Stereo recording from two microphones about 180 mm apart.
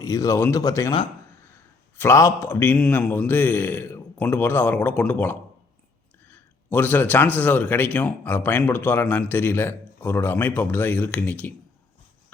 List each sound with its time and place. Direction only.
0.0 s speech: 20° left (ahead or behind)
2.0 s speech: 15° left (ahead or behind)